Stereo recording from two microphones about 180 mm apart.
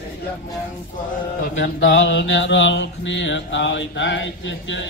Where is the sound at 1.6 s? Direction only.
90° left.